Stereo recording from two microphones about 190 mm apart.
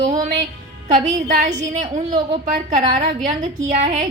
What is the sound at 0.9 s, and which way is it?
A woman's voice, 40° right (ahead or behind).